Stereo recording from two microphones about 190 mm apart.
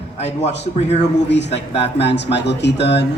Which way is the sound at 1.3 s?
65° left (ahead or behind).